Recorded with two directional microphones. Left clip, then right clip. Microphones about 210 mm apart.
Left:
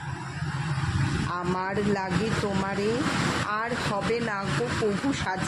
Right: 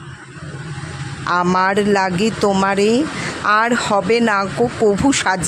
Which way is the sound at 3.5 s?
55° right (ahead or behind).